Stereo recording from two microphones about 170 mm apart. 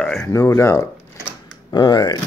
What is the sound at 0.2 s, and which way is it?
Speech, 20° left (ahead or behind).